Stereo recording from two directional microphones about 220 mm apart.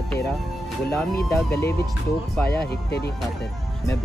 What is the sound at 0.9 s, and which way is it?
Speech, 10° left (ahead or behind).